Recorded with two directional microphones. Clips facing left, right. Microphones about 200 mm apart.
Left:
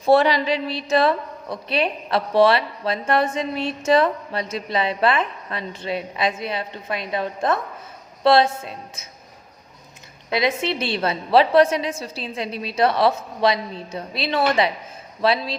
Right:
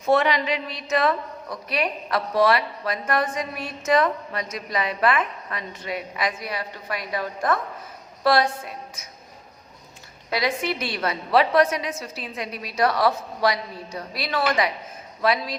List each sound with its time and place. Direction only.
0.0 s a woman's voice: 35° left (ahead or behind)
10.2 s a woman's voice: 20° left (ahead or behind)